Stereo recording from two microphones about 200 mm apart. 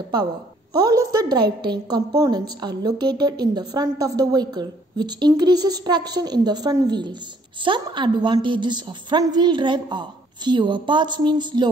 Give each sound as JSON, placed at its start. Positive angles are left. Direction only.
{"t": 0.7, "sound": "a woman's voice", "side_deg": -20}